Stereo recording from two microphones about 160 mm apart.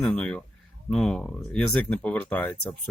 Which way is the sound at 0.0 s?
5° left (ahead or behind).